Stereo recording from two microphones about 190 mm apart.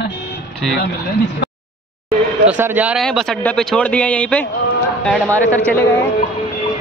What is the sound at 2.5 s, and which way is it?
Speech, 10° right (ahead or behind).